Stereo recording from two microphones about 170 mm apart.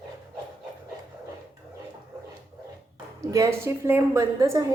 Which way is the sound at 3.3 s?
20° right (ahead or behind).